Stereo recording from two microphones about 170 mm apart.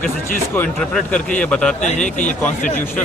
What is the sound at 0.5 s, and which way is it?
A man's voice, 5° left (ahead or behind).